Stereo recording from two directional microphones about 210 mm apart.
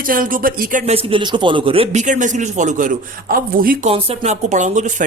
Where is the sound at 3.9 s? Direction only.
25° right (ahead or behind).